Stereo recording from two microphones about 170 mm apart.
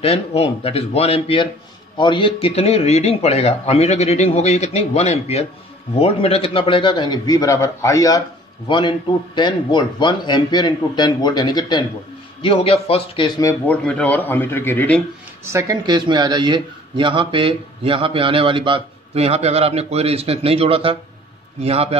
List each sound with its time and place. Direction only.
0.0 s a man's voice: 35° left (ahead or behind)
13.4 s a man's voice: 15° left (ahead or behind)
15.4 s speech: 20° right (ahead or behind); by 21.9 s 35° right (ahead or behind)